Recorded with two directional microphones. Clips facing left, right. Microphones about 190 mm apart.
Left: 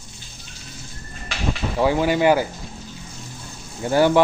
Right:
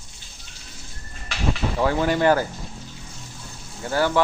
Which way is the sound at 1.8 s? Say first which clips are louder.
Left 3 dB; 10° left (ahead or behind).